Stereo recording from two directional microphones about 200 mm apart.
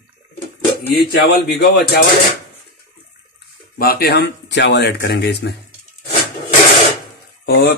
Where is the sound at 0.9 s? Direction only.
50° left (ahead or behind).